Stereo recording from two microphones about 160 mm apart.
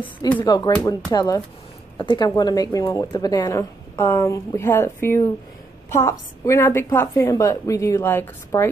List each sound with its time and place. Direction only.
0.5 s a woman's voice: 25° left (ahead or behind)